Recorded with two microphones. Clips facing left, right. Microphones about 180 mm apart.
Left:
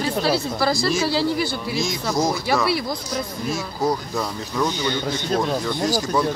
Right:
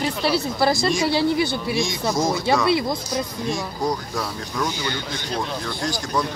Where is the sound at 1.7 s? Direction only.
Centre (ahead or behind).